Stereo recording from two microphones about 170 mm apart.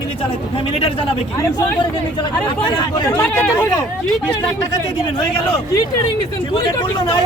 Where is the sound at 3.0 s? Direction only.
10° left (ahead or behind).